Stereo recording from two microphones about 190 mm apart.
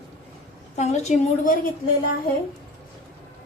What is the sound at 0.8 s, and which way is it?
Speech, 35° left (ahead or behind).